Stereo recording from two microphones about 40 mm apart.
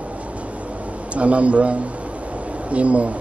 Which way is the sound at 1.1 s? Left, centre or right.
Right.